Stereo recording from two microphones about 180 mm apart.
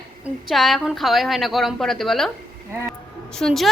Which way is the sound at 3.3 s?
Centre (ahead or behind).